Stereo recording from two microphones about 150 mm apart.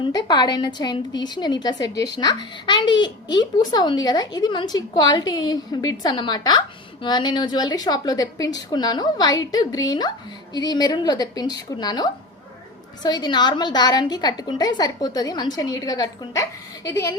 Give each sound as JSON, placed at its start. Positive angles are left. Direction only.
{"t": 0.0, "sound": "a woman's voice", "side_deg": 30}